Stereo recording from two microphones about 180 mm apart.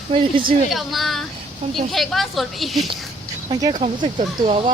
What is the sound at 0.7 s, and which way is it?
Speech, centre (ahead or behind).